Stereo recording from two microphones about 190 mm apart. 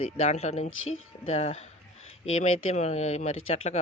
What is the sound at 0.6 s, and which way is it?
Speech, 90° left.